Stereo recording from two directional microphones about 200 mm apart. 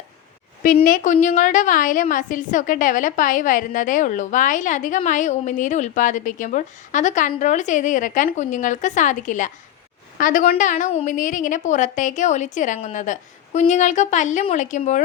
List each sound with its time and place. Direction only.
0.9 s a woman's voice: 40° left (ahead or behind)